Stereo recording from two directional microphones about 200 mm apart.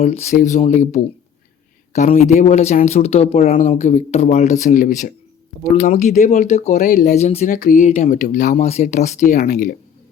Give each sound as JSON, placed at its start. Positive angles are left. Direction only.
{"t": 0.0, "sound": "speech", "side_deg": 35}